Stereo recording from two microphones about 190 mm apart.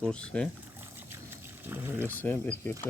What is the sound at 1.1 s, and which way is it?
Boat, 10° right (ahead or behind).